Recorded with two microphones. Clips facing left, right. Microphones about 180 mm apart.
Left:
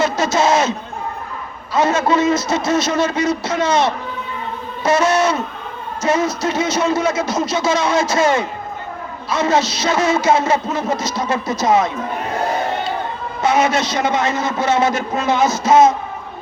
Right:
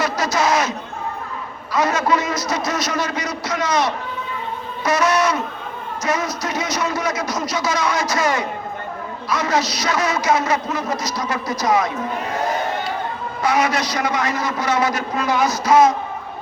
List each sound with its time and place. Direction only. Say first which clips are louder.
0.0 s a man's voice: left 4 dB; 25° left (ahead or behind)
1.7 s a man's voice: left 3 dB; 25° left (ahead or behind)
13.4 s a man's voice: left 3 dB; 25° left (ahead or behind)